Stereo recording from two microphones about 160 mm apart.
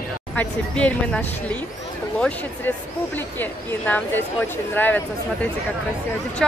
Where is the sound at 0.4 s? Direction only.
10° left (ahead or behind).